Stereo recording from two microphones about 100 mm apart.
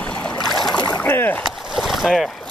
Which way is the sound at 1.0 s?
20° left (ahead or behind).